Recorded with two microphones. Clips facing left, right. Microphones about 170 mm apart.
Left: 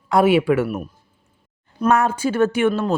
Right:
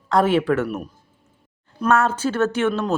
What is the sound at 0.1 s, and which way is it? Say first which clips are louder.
Speech: left 2 dB; 10° left (ahead or behind).